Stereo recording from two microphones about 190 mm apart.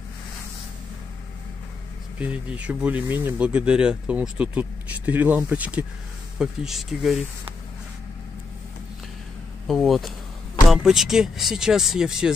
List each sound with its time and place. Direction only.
2.1 s speech: 5° right (ahead or behind)
9.7 s speech: centre (ahead or behind)